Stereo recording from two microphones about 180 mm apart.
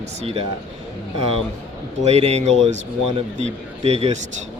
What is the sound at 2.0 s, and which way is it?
Speech, 40° right (ahead or behind).